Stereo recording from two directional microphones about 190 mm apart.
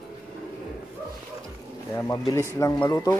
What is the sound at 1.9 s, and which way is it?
Speech, 15° left (ahead or behind).